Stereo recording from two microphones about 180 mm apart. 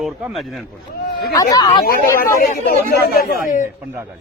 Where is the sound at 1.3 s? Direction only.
20° left (ahead or behind).